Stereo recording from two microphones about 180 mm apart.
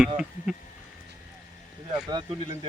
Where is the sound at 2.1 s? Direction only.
25° right (ahead or behind).